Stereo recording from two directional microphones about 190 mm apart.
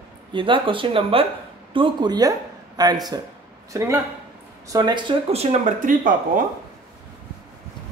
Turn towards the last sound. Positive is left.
turn(degrees=-45)  # may be behind; listen again after turning